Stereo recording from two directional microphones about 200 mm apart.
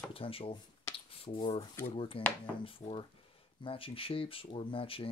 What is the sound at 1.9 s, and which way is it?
Speech, 25° left (ahead or behind).